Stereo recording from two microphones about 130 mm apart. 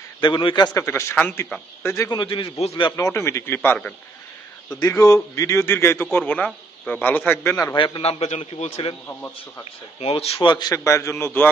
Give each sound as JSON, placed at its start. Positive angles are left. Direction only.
{"t": 0.2, "sound": "a man's voice", "side_deg": 35}
{"t": 0.7, "sound": "a man's voice", "side_deg": 20}
{"t": 2.0, "sound": "a man's voice", "side_deg": 40}
{"t": 3.0, "sound": "a man's voice", "side_deg": 20}
{"t": 5.0, "sound": "a man's voice", "side_deg": 25}
{"t": 7.6, "sound": "a man's voice", "side_deg": 35}
{"t": 8.0, "sound": "a man's voice", "side_deg": 55}
{"t": 9.9, "sound": "speech", "side_deg": 50}
{"t": 10.5, "sound": "a man's voice", "side_deg": 30}